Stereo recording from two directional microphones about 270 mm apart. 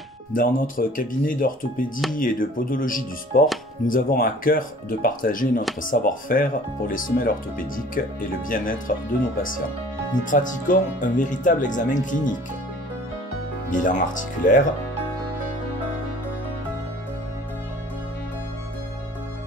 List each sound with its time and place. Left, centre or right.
0.3 s speech: left
10.3 s speech: left
13.7 s speech: left